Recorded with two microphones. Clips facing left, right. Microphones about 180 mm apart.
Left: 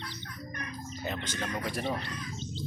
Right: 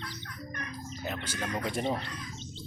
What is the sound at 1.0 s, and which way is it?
Speech, 5° right (ahead or behind).